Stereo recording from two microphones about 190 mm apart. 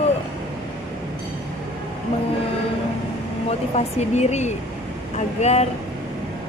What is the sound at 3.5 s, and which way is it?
Speech, 35° left (ahead or behind).